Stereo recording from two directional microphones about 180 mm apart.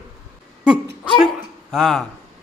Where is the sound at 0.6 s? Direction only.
5° right (ahead or behind).